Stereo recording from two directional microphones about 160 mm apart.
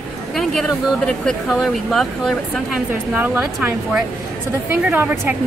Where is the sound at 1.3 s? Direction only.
Centre (ahead or behind).